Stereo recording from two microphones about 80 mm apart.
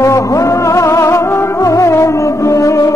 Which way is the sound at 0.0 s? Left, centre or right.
Left.